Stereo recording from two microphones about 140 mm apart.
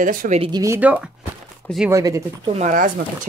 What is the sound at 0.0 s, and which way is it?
Speech, 75° right (ahead or behind).